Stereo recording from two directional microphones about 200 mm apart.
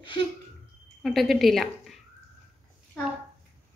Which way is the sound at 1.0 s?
Centre (ahead or behind).